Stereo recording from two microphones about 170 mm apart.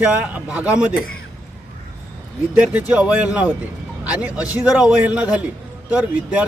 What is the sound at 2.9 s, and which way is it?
Speech, 5° right (ahead or behind).